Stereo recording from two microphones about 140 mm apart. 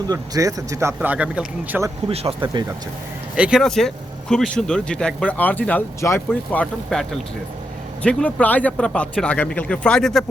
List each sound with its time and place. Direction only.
0.1 s speech: 25° right (ahead or behind)
0.9 s speech: 10° right (ahead or behind)
2.0 s speech: 40° right (ahead or behind)
3.3 s speech: 10° right (ahead or behind)
3.6 s speech: 5° left (ahead or behind)
8.0 s speech: 10° left (ahead or behind)